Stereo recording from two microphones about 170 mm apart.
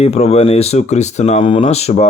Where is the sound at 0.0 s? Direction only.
35° left (ahead or behind).